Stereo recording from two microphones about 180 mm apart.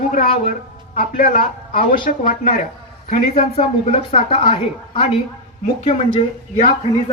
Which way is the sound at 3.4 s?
35° left (ahead or behind).